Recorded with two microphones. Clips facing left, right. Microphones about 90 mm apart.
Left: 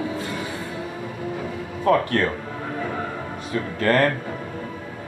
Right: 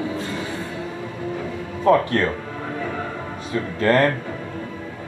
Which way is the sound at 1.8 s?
25° right (ahead or behind).